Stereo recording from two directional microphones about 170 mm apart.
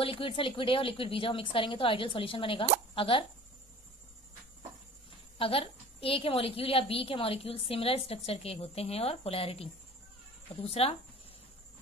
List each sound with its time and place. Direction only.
0.0 s a woman's voice: 30° left (ahead or behind)
5.4 s a woman's voice: 35° left (ahead or behind)
10.7 s a woman's voice: 35° left (ahead or behind)